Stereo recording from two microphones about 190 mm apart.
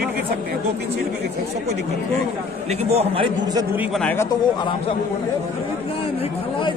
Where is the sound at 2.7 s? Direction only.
35° right (ahead or behind).